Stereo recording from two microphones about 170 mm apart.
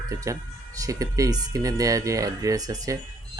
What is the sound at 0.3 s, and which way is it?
Speech, 20° right (ahead or behind).